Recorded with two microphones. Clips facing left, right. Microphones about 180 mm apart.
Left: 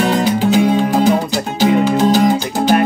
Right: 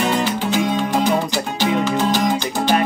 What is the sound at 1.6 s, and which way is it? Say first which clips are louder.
Music: left 6 dB; 40° left (ahead or behind).